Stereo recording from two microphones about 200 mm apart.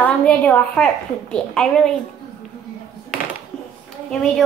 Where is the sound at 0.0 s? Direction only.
5° left (ahead or behind).